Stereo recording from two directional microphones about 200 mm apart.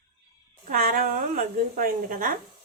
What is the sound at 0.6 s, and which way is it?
Speech, 45° right (ahead or behind).